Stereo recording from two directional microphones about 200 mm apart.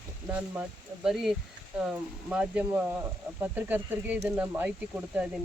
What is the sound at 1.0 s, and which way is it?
Speech, centre (ahead or behind).